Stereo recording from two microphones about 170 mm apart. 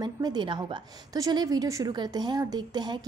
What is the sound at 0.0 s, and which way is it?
A woman's voice, 25° right (ahead or behind).